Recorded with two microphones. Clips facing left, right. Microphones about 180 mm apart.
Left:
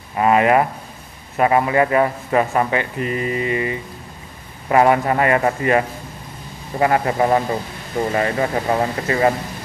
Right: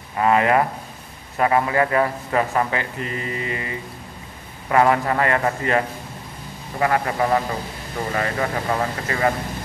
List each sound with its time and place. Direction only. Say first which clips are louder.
0.2 s a man's voice: left 3 dB; 20° left (ahead or behind)